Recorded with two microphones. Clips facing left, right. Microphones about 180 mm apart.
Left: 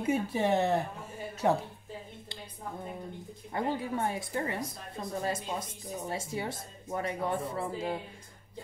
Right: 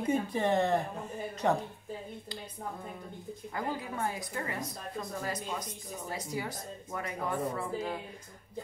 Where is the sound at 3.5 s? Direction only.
25° left (ahead or behind).